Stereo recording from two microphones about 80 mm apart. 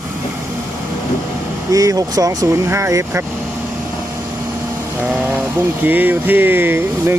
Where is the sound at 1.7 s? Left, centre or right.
Right.